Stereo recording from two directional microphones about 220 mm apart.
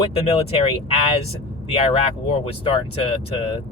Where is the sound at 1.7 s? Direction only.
25° left (ahead or behind).